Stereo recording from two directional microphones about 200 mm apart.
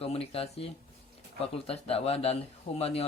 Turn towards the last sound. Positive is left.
turn(degrees=30)  # may be behind; listen again after turning